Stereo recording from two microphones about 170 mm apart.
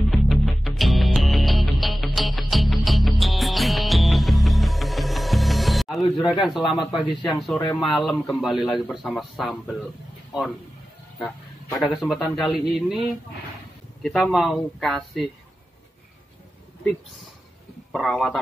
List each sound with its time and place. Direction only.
0.1 s music: centre (ahead or behind)
6.2 s a man's voice: 5° right (ahead or behind)
11.2 s a man's voice: centre (ahead or behind)
17.9 s a man's voice: centre (ahead or behind)